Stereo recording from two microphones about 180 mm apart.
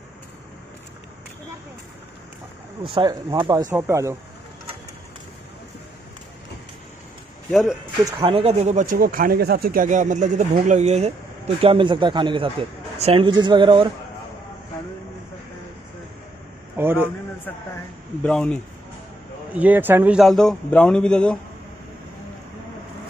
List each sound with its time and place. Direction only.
2.8 s speech: 25° right (ahead or behind)
8.0 s speech: 25° right (ahead or behind)
16.7 s a man's voice: 10° right (ahead or behind)
18.2 s a man's voice: 5° left (ahead or behind)
19.5 s a man's voice: 10° right (ahead or behind)